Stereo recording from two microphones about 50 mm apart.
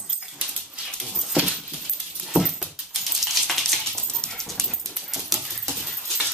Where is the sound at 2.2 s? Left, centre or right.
Centre.